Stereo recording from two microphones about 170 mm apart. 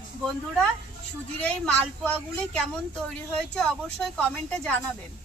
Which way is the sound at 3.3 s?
5° left (ahead or behind).